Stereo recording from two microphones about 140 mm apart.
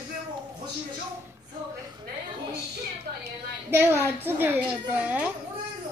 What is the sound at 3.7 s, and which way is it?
A woman's voice, 15° right (ahead or behind).